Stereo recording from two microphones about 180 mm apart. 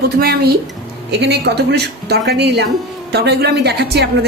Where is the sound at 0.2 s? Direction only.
60° right (ahead or behind).